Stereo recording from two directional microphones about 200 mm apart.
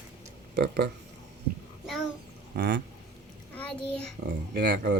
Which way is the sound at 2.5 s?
50° right (ahead or behind).